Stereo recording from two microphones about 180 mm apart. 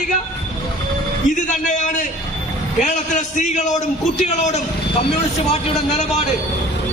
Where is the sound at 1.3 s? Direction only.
45° left (ahead or behind).